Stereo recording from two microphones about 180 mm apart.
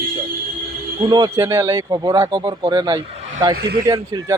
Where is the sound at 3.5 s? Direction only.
60° right (ahead or behind).